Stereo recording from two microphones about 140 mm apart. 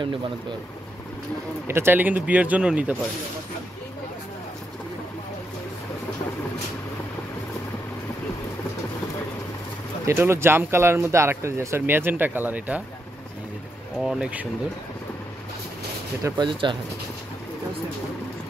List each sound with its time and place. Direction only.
0.0 s speech: 35° right (ahead or behind)
1.7 s speech: 15° right (ahead or behind)
10.0 s speech: 20° right (ahead or behind)
14.0 s speech: 5° right (ahead or behind)
16.3 s speech: 35° right (ahead or behind)